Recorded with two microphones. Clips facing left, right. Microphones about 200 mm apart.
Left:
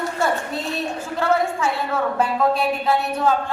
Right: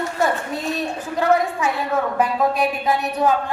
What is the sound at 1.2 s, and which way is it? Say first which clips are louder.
A man's voice: right 2 dB; 15° right (ahead or behind).